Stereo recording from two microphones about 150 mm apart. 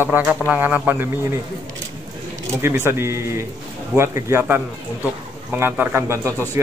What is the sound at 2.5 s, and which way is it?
Speech, 15° right (ahead or behind).